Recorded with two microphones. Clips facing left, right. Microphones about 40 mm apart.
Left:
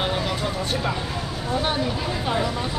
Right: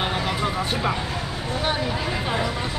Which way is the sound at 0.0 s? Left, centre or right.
Centre.